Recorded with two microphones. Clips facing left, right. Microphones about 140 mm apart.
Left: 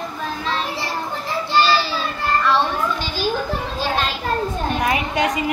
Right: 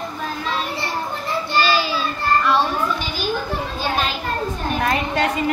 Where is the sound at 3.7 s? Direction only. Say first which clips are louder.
Even; centre (ahead or behind).